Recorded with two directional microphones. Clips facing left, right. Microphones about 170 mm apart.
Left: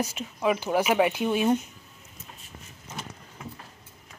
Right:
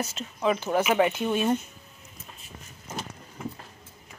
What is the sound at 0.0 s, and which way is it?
Speech, 10° left (ahead or behind).